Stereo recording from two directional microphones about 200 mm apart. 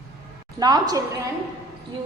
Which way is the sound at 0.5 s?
20° right (ahead or behind).